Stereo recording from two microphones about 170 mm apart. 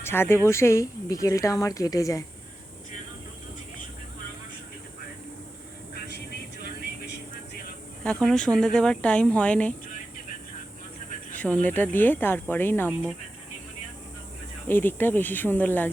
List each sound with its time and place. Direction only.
0.0 s speech: 15° left (ahead or behind)
6.6 s a sound: 70° left (ahead or behind)
8.0 s speech: 5° left (ahead or behind)
11.3 s speech: 10° left (ahead or behind)
14.7 s speech: 10° left (ahead or behind)